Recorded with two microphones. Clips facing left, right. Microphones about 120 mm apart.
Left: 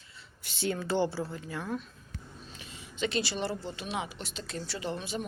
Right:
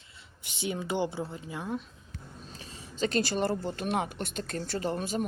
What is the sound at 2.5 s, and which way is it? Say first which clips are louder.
Speech: right 2 dB; 35° right (ahead or behind).